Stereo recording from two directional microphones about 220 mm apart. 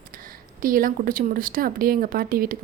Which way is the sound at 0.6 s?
40° right (ahead or behind).